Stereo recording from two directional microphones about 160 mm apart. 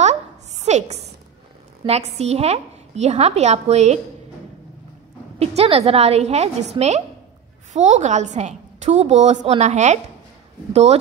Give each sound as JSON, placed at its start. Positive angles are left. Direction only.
{"t": 0.0, "sound": "a sound", "side_deg": -45}
{"t": 1.9, "sound": "a woman's voice", "side_deg": -40}
{"t": 5.4, "sound": "a woman's voice", "side_deg": -40}